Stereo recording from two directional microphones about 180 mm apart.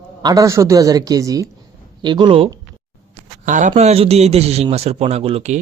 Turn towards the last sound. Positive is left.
turn(degrees=-35)  # may be behind; listen again after turning